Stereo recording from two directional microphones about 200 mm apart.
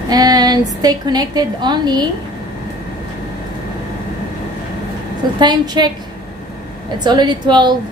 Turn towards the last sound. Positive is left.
turn(degrees=-20)  # may be behind; listen again after turning